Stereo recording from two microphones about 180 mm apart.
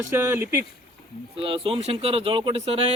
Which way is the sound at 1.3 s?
30° right (ahead or behind).